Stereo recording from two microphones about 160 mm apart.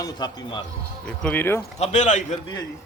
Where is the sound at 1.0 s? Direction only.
10° left (ahead or behind).